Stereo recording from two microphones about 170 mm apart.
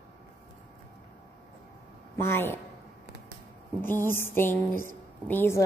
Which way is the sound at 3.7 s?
10° left (ahead or behind).